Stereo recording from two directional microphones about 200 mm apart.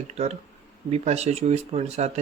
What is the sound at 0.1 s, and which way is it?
A man's voice, 30° right (ahead or behind).